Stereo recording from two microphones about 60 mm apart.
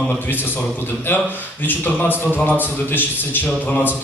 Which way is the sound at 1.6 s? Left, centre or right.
Left.